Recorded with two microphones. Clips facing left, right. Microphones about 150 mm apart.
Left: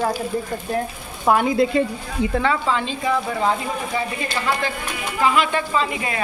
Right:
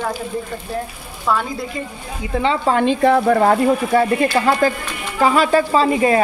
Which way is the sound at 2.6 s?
50° right (ahead or behind).